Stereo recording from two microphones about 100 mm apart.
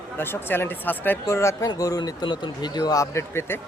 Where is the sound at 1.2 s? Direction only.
30° left (ahead or behind).